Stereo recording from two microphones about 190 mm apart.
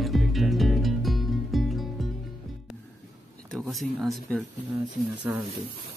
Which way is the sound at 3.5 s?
Centre (ahead or behind).